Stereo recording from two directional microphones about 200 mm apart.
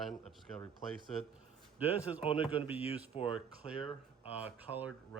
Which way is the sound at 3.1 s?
30° left (ahead or behind).